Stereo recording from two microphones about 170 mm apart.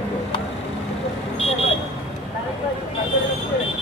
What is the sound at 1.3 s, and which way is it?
Vehicle, 40° left (ahead or behind).